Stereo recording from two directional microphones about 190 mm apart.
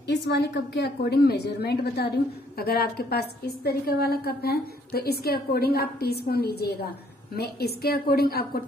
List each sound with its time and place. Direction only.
0.0 s a woman's voice: 65° left (ahead or behind)